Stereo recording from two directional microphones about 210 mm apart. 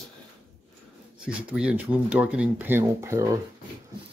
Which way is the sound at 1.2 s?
5° right (ahead or behind).